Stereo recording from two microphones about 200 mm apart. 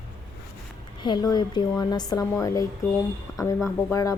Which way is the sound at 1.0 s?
20° left (ahead or behind).